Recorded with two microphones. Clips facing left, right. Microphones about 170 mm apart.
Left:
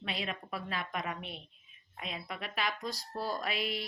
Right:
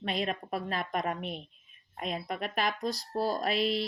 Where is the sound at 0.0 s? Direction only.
45° right (ahead or behind).